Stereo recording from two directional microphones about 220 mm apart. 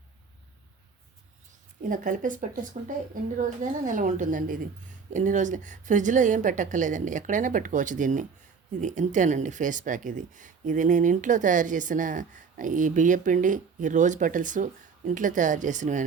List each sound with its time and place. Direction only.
1.9 s speech: 35° right (ahead or behind)